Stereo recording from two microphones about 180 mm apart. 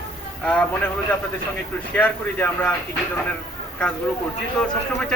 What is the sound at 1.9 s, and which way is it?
Speech, 10° left (ahead or behind).